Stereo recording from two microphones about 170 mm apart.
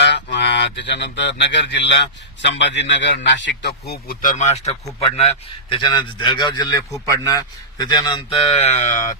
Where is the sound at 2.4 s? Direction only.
90° left.